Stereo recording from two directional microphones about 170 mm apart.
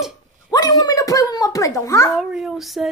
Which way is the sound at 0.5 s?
20° left (ahead or behind).